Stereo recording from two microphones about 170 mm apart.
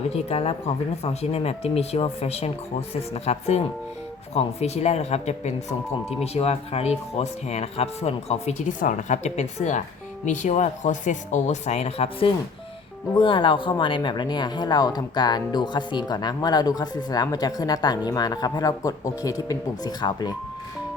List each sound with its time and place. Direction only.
0.1 s speech: 35° left (ahead or behind)